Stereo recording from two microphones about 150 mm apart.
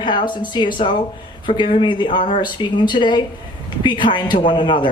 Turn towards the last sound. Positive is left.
turn(degrees=30)  # may be behind; listen again after turning